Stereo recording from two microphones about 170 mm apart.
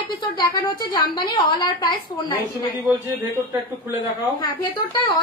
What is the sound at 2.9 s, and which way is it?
A man's voice, 10° right (ahead or behind).